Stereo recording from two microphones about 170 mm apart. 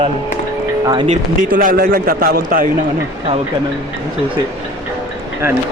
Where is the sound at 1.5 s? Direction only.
55° right (ahead or behind).